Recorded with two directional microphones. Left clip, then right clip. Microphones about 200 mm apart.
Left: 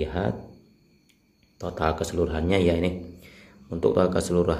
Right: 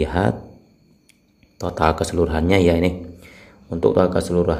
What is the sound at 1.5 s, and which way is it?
Speech, 15° right (ahead or behind).